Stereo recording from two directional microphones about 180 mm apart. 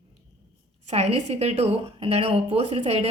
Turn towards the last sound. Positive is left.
turn(degrees=-35)  # may be behind; listen again after turning